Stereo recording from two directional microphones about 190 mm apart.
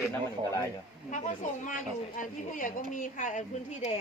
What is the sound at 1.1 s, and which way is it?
A woman's voice, 40° left (ahead or behind).